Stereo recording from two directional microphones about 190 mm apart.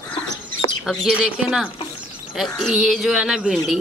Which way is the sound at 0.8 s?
Centre (ahead or behind).